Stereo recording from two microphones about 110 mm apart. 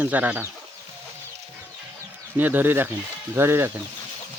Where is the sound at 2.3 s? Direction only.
15° right (ahead or behind).